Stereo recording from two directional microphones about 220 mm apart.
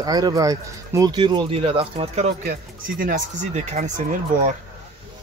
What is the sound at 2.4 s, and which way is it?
Speech, 40° right (ahead or behind).